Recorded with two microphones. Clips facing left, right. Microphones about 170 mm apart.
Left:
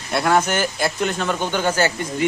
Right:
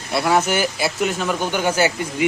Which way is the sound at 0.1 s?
5° right (ahead or behind).